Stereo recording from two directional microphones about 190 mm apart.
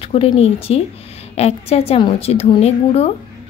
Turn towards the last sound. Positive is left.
turn(degrees=30)  # may be behind; listen again after turning